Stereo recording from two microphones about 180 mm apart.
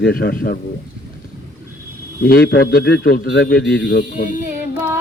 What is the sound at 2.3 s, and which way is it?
A man's voice, 60° left (ahead or behind).